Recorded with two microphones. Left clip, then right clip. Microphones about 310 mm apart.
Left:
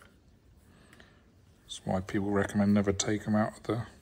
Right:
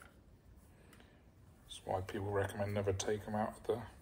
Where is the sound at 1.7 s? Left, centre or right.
Left.